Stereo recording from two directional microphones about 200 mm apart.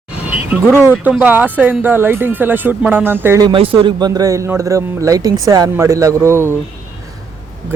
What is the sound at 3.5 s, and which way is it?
Speech, 25° right (ahead or behind).